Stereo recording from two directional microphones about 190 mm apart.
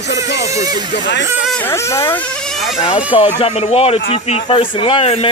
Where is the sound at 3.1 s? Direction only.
30° left (ahead or behind).